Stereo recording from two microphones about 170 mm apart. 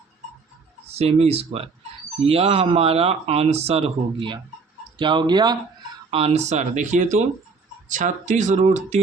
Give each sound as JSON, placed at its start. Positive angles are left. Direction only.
{"t": 0.9, "sound": "speech", "side_deg": -35}